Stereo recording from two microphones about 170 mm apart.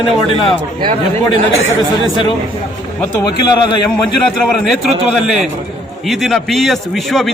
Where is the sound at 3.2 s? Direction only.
25° left (ahead or behind).